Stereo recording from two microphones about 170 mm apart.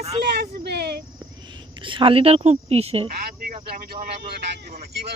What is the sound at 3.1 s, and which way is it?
Speech, 60° right (ahead or behind).